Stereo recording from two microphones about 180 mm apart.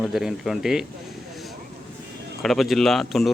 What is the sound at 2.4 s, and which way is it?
Speech, centre (ahead or behind).